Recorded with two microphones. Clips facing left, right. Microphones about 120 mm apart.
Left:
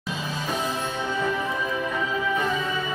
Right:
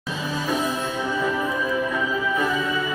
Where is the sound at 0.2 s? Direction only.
25° left (ahead or behind).